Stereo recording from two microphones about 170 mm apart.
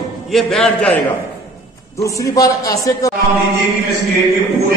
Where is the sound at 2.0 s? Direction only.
20° left (ahead or behind).